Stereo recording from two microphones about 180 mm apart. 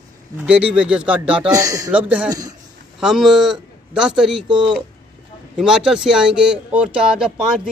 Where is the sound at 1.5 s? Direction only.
20° right (ahead or behind).